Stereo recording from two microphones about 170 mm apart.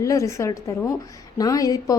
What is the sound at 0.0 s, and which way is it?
A woman's voice, 20° left (ahead or behind).